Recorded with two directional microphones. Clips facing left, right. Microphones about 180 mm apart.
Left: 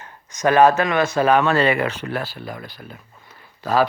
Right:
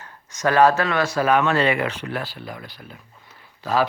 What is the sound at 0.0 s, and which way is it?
Speech, 20° left (ahead or behind).